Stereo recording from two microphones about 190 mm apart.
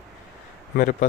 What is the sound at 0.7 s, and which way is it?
Speech, 45° left (ahead or behind).